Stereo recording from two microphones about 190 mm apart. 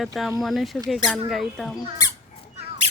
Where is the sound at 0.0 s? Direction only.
Centre (ahead or behind).